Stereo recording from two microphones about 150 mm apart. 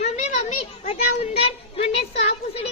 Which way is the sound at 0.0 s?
50° left (ahead or behind).